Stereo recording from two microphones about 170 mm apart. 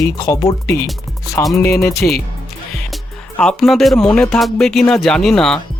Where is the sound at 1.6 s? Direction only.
15° left (ahead or behind).